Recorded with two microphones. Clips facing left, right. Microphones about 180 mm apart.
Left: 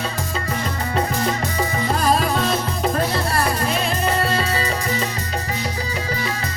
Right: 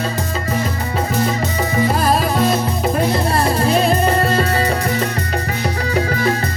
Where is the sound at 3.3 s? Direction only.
30° right (ahead or behind); by 5.0 s 55° right (ahead or behind).